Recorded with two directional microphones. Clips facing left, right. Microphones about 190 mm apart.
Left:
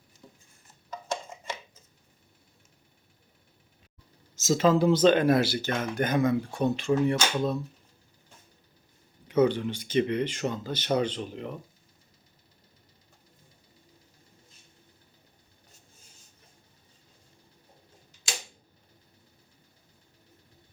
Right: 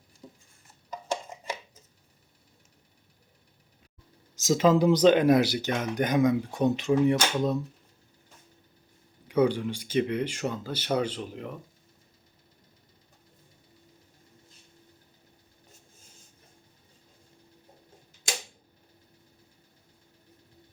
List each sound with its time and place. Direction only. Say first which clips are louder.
0.2 s dishes: right 4 dB; 20° right (ahead or behind)
4.4 s speech: right 1 dB; 15° right (ahead or behind)
9.2 s speech: left 1 dB; 10° right (ahead or behind)